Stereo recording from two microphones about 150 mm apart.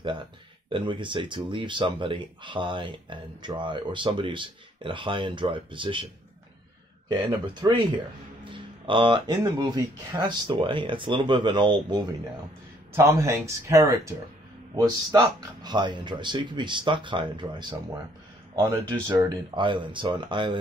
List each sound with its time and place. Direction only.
0.7 s speech: 35° right (ahead or behind)
7.1 s speech: 30° right (ahead or behind)
12.9 s speech: 20° right (ahead or behind)